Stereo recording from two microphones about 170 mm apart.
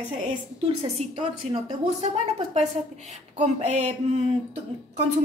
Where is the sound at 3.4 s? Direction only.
45° right (ahead or behind).